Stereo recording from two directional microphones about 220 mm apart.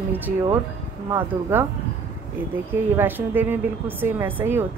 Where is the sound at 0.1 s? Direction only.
10° right (ahead or behind).